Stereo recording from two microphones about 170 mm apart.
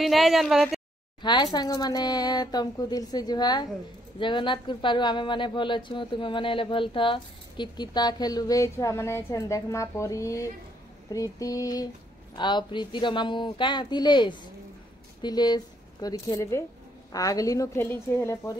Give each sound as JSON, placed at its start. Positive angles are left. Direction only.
{"t": 0.0, "sound": "a woman's voice", "side_deg": 0}
{"t": 1.2, "sound": "speech", "side_deg": 25}